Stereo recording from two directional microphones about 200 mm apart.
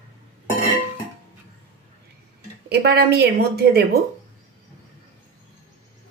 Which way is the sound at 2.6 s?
55° right (ahead or behind).